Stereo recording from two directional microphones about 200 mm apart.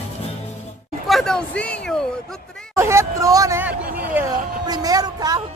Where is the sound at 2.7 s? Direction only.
15° right (ahead or behind).